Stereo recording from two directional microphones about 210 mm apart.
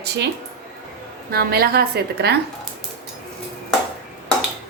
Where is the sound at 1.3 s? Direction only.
45° right (ahead or behind).